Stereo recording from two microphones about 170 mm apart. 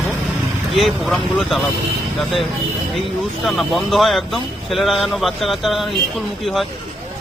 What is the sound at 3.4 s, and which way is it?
Speech, centre (ahead or behind).